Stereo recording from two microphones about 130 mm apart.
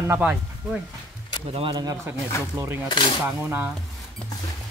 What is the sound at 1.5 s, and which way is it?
Speech, 45° right (ahead or behind).